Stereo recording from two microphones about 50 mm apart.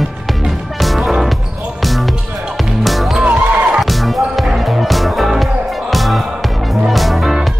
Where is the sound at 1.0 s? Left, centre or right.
Centre.